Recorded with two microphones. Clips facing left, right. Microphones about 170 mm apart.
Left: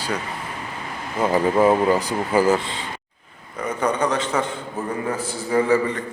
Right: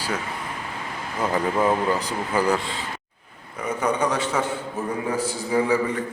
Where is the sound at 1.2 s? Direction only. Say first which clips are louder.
Left 5 dB; 25° left (ahead or behind).